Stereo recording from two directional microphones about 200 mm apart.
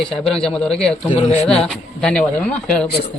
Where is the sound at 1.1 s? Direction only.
35° left (ahead or behind).